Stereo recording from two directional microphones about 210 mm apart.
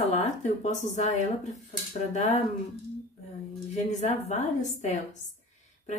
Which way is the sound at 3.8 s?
35° left (ahead or behind).